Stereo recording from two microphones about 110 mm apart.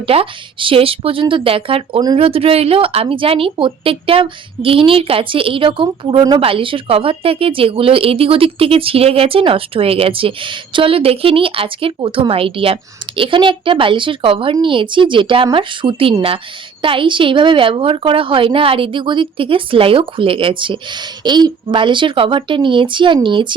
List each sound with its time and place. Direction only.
0.1 s a woman's voice: 55° right (ahead or behind)